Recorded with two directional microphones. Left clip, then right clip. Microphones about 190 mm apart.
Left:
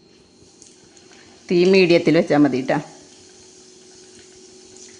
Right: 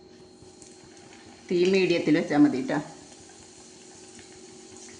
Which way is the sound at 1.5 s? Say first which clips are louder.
Left 8 dB; 55° left (ahead or behind).